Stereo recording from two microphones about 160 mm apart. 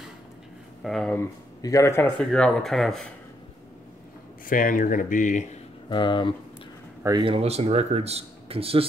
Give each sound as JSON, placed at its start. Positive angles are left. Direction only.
{"t": 0.8, "sound": "speech", "side_deg": 0}
{"t": 1.6, "sound": "speech", "side_deg": 20}
{"t": 2.1, "sound": "speech", "side_deg": 5}
{"t": 4.5, "sound": "speech", "side_deg": 60}
{"t": 5.9, "sound": "speech", "side_deg": 30}
{"t": 7.0, "sound": "speech", "side_deg": -20}
{"t": 7.2, "sound": "speech", "side_deg": -40}